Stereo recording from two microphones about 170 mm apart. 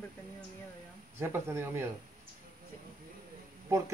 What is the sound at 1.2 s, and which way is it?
Speech, 15° right (ahead or behind).